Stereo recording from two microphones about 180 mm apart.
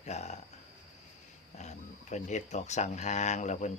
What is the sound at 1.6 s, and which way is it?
Speech, 40° left (ahead or behind).